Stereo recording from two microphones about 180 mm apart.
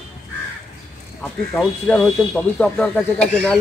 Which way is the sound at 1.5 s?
Centre (ahead or behind).